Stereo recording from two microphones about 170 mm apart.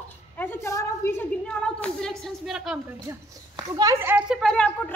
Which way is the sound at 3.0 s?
20° right (ahead or behind).